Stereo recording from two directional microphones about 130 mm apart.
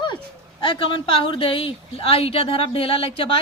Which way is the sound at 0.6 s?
40° left (ahead or behind).